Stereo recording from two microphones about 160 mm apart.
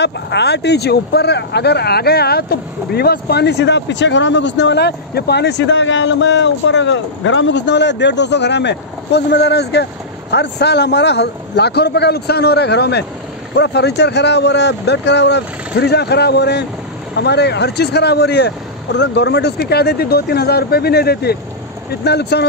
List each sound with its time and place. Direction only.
0.0 s speech: 90° left
7.5 s speech: 90° left